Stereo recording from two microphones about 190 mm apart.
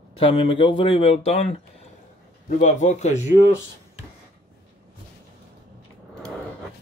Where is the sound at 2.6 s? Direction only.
40° left (ahead or behind).